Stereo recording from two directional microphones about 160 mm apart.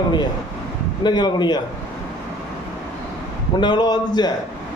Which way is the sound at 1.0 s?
25° left (ahead or behind).